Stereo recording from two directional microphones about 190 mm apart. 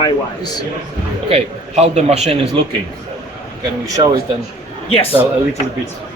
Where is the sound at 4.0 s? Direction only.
25° right (ahead or behind).